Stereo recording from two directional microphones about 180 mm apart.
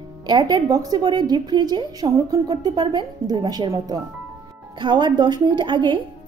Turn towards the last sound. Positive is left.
turn(degrees=-25)  # may be behind; listen again after turning